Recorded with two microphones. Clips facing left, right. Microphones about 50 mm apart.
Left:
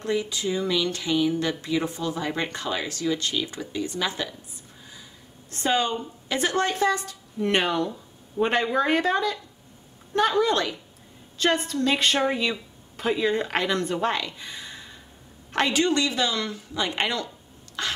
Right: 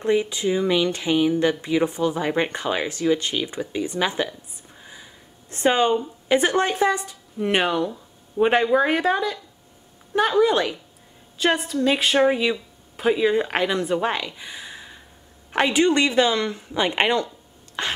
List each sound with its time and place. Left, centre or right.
0.0 s speech: right
5.5 s a woman's voice: right
15.9 s speech: right